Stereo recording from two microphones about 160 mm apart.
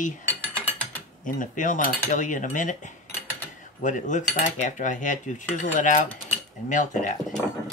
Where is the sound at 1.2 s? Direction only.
55° left (ahead or behind).